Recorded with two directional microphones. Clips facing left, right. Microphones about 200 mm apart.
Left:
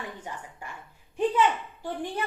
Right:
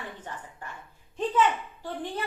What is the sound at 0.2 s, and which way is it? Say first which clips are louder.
Speech: left 1 dB; 10° left (ahead or behind).